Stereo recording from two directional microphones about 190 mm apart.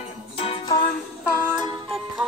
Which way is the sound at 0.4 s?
30° left (ahead or behind).